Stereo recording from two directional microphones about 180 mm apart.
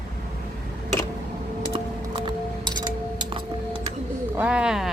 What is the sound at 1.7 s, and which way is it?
Music, 25° right (ahead or behind).